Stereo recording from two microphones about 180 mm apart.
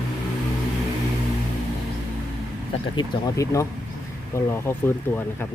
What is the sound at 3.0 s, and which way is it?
Speech, 20° left (ahead or behind).